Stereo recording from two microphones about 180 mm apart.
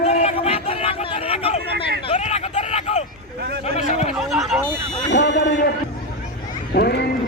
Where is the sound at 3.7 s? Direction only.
40° left (ahead or behind).